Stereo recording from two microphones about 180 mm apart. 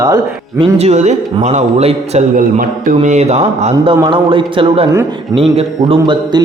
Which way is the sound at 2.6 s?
45° right (ahead or behind).